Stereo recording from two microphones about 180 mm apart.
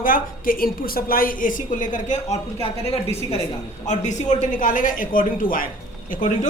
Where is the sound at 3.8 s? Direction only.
40° left (ahead or behind).